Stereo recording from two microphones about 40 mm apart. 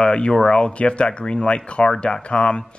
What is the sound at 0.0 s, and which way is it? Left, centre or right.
Speech, left.